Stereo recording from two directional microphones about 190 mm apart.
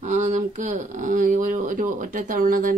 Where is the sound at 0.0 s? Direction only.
40° right (ahead or behind).